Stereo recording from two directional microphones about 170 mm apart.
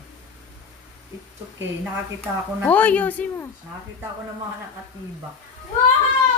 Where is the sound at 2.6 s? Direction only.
10° left (ahead or behind).